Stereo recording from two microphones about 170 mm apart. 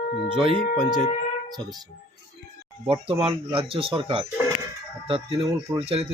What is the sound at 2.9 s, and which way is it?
Speech, 35° right (ahead or behind).